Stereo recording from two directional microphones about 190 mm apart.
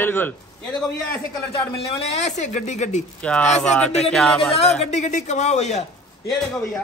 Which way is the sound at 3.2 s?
5° left (ahead or behind).